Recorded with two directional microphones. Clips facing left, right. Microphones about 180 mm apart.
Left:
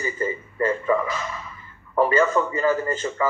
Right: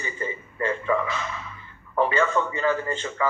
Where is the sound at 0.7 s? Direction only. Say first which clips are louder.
Left 2 dB; 5° left (ahead or behind).